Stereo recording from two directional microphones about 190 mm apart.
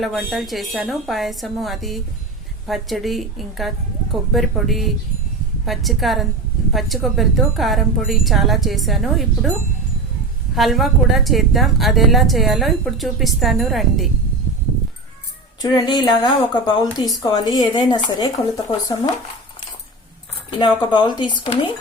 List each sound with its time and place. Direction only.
0.3 s a woman's voice: centre (ahead or behind)
10.5 s a woman's voice: centre (ahead or behind)
15.6 s speech: 25° left (ahead or behind)
20.6 s speech: 25° left (ahead or behind)